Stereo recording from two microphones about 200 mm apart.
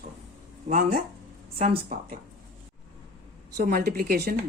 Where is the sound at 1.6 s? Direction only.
45° right (ahead or behind).